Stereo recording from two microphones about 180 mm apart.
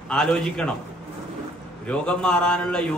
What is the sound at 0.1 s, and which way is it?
Speech, 5° left (ahead or behind).